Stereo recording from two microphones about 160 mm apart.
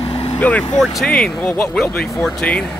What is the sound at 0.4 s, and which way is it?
Speech, 10° left (ahead or behind).